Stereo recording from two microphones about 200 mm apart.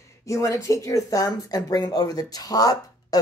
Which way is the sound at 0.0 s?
15° left (ahead or behind).